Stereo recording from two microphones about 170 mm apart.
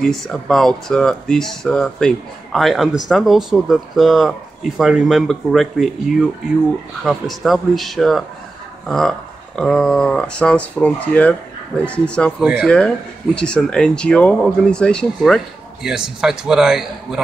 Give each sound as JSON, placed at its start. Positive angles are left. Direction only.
{"t": 0.0, "sound": "speech", "side_deg": 0}